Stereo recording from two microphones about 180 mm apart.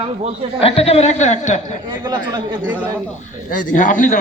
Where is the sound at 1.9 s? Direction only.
25° right (ahead or behind).